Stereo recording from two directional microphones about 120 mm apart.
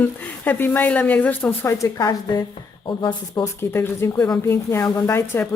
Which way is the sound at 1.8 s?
30° left (ahead or behind).